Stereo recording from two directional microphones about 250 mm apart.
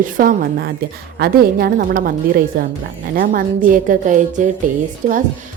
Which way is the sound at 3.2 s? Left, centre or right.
Right.